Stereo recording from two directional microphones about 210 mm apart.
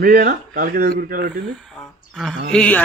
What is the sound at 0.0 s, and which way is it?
Speech, 45° right (ahead or behind).